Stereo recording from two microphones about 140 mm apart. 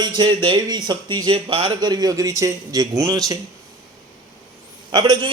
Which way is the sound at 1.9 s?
25° right (ahead or behind).